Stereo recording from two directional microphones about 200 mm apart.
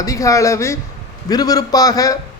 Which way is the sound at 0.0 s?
15° left (ahead or behind).